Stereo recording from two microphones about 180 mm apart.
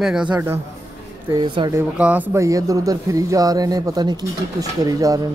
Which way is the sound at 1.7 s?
10° right (ahead or behind).